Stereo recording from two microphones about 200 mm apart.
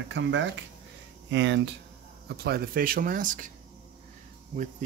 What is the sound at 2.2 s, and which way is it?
Speech, 50° right (ahead or behind).